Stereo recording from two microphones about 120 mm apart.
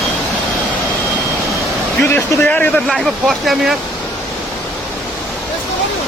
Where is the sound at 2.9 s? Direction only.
Centre (ahead or behind).